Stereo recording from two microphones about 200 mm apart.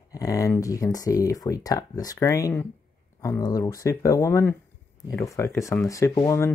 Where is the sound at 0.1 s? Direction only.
15° left (ahead or behind).